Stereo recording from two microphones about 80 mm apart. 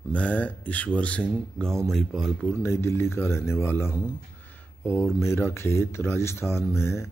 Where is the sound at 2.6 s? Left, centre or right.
Left.